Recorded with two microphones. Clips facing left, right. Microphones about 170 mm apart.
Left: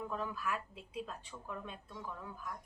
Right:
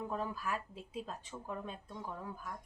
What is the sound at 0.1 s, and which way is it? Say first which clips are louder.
Speech: right 1 dB; 35° right (ahead or behind).